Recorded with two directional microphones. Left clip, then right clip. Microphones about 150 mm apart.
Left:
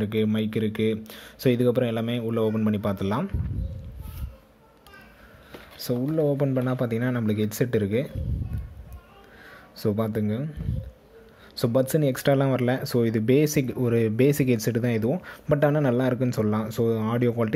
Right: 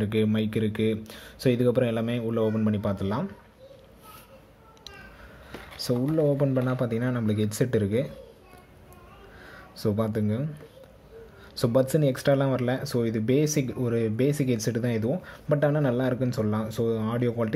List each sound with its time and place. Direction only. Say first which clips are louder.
0.0 s speech: even; 10° left (ahead or behind)
6.1 s speech: left 1 dB; 10° left (ahead or behind)
9.8 s speech: left 1 dB; 15° left (ahead or behind)
11.5 s speech: even; 10° left (ahead or behind)